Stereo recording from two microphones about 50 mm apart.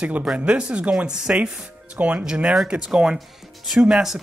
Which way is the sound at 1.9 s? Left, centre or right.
Right.